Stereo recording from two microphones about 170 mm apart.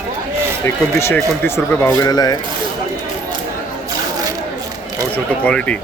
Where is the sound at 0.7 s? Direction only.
15° left (ahead or behind).